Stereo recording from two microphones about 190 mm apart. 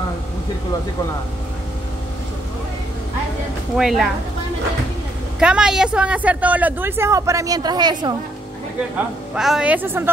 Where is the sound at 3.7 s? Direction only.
Centre (ahead or behind).